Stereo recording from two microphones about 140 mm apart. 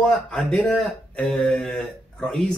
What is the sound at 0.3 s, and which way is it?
Speech, 5° left (ahead or behind).